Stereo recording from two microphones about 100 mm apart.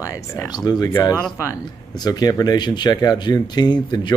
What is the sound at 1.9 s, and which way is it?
Speech, 40° left (ahead or behind).